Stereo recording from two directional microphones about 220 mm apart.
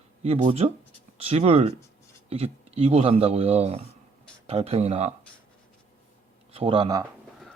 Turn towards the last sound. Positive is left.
turn(degrees=-20)  # may be behind; listen again after turning